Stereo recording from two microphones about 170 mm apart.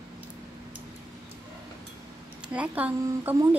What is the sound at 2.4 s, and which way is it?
Speech, 10° right (ahead or behind).